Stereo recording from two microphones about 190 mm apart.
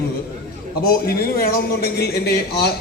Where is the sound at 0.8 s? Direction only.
50° left (ahead or behind).